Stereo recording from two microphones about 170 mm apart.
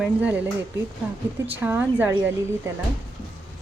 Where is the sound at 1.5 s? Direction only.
10° right (ahead or behind).